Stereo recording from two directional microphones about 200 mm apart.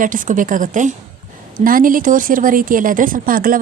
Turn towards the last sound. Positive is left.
turn(degrees=-45)  # may be behind; listen again after turning